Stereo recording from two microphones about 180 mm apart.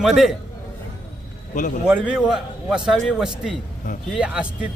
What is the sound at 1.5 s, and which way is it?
Speech, 45° left (ahead or behind).